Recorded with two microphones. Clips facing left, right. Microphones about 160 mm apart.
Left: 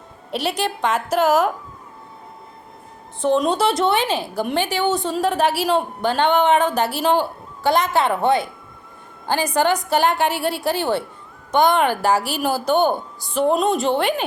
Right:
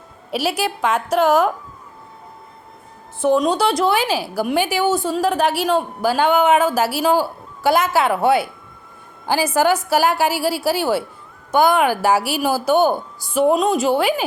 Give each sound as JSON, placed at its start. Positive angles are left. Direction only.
{"t": 0.3, "sound": "a woman's voice", "side_deg": -5}
{"t": 3.2, "sound": "a woman's voice", "side_deg": -5}